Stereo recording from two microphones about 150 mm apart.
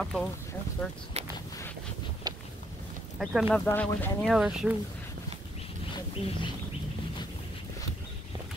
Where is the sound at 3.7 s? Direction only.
15° left (ahead or behind).